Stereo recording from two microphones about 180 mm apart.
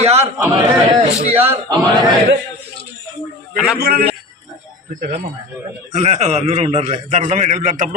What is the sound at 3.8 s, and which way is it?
Speech, 60° right (ahead or behind).